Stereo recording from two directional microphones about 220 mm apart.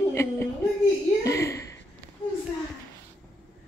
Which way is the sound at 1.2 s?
15° left (ahead or behind).